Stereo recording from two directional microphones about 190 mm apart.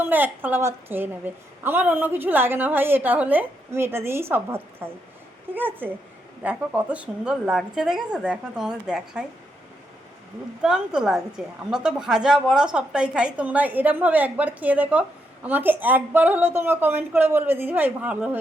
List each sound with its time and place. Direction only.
0.0 s a woman's voice: 10° right (ahead or behind)
10.6 s a woman's voice: 5° right (ahead or behind)